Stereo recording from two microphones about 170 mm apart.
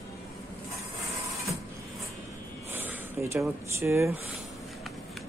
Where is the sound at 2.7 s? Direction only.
15° right (ahead or behind).